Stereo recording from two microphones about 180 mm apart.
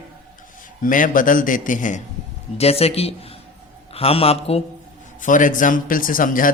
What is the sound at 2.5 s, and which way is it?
A man's voice, 35° left (ahead or behind).